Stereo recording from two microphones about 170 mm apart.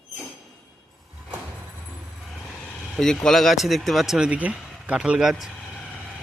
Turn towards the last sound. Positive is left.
turn(degrees=-5)  # may be behind; listen again after turning